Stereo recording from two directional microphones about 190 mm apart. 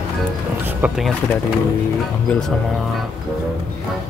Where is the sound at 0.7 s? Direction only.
10° right (ahead or behind).